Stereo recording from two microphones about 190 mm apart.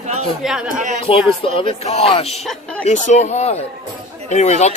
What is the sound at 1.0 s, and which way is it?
Speech, 30° left (ahead or behind).